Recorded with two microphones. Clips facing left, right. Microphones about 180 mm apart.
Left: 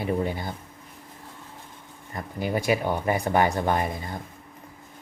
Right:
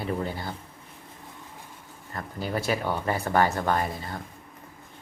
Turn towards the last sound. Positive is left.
turn(degrees=15)  # may be behind; listen again after turning